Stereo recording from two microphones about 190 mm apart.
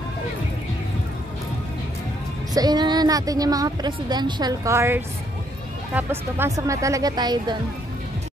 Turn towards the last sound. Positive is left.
turn(degrees=-20)  # may be behind; listen again after turning